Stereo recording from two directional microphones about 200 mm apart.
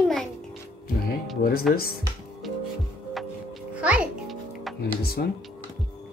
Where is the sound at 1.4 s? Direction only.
50° left (ahead or behind).